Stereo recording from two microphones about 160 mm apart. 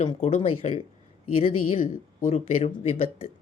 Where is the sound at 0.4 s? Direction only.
35° left (ahead or behind).